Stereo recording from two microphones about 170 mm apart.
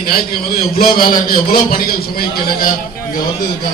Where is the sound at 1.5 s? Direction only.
60° left (ahead or behind).